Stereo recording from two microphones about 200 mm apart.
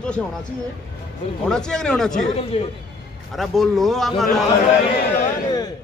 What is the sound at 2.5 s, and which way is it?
Speech, 30° left (ahead or behind).